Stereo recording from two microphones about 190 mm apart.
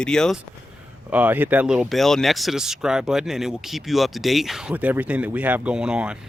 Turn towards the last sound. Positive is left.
turn(degrees=-5)  # may be behind; listen again after turning